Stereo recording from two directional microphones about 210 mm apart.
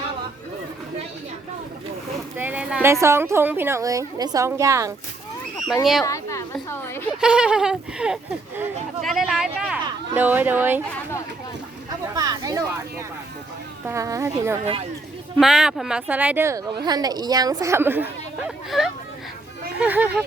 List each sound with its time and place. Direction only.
2.4 s speech: 5° right (ahead or behind)
5.8 s speech: centre (ahead or behind)
6.1 s a woman's voice: 15° left (ahead or behind)
7.2 s speech: 5° right (ahead or behind)
12.1 s a sound: 20° right (ahead or behind)
13.8 s speech: 15° right (ahead or behind)
15.4 s speech: 5° right (ahead or behind)